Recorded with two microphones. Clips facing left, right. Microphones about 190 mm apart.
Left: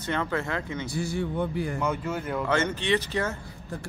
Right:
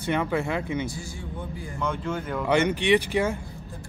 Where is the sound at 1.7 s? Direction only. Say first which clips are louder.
Even; 5° left (ahead or behind).